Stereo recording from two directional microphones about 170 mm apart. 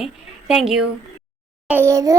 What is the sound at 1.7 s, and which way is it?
Speech, 15° right (ahead or behind).